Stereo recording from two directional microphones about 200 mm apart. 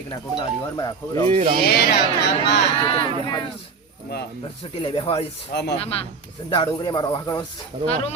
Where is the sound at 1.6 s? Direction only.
55° left (ahead or behind).